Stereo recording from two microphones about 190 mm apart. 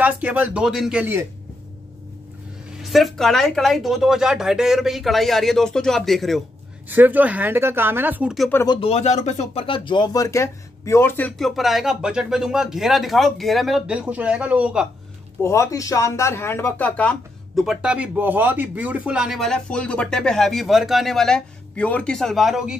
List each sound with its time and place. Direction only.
0.0 s speech: 10° right (ahead or behind)
2.8 s speech: centre (ahead or behind)
8.6 s speech: 30° left (ahead or behind); by 14.9 s 5° right (ahead or behind)
15.4 s speech: 15° left (ahead or behind); by 22.8 s centre (ahead or behind)